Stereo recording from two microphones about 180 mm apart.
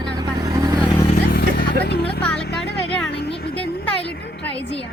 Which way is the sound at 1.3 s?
65° left (ahead or behind).